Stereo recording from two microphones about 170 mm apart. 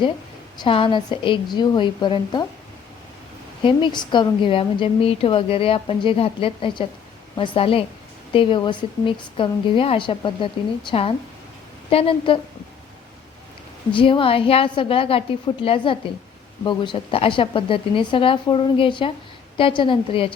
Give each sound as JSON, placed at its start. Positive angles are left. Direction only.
{"t": 0.5, "sound": "a woman's voice", "side_deg": 30}
{"t": 3.6, "sound": "a woman's voice", "side_deg": 30}
{"t": 13.9, "sound": "a woman's voice", "side_deg": 30}